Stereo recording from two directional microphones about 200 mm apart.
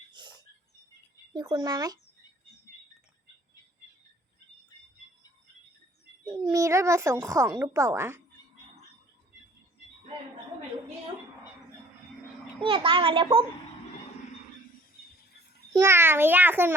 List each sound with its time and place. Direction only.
0.1 s a sound: 20° right (ahead or behind)
1.3 s a child's voice: 20° right (ahead or behind)
6.2 s speech: 20° right (ahead or behind)
12.5 s a child's voice: 25° right (ahead or behind)
15.7 s speech: 15° right (ahead or behind)